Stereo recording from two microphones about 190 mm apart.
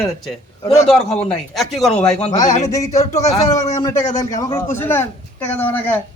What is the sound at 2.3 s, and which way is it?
A man's voice, 20° left (ahead or behind).